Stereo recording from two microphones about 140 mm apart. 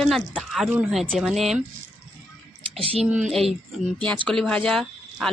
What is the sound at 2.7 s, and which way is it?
Speech, 45° right (ahead or behind).